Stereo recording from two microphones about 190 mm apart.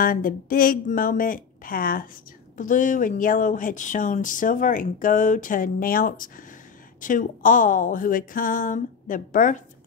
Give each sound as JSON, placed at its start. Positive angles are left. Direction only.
{"t": 0.0, "sound": "speech", "side_deg": 45}